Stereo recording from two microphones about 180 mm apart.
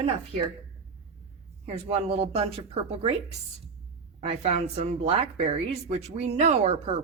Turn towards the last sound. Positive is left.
turn(degrees=-35)  # may be behind; listen again after turning